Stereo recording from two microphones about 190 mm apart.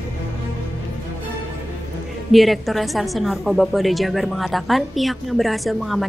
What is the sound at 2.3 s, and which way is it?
A woman's voice, centre (ahead or behind).